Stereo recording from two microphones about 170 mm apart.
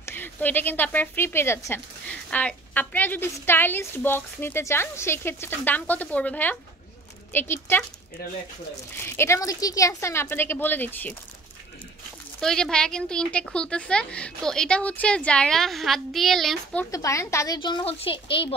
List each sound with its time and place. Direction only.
0.0 s a woman's voice: 10° left (ahead or behind)
8.9 s a woman's voice: 15° left (ahead or behind)
12.4 s speech: 5° left (ahead or behind)
16.9 s a woman's voice: 20° left (ahead or behind)
17.6 s speech: 30° left (ahead or behind)